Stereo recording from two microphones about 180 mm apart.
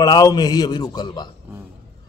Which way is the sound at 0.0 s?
20° left (ahead or behind).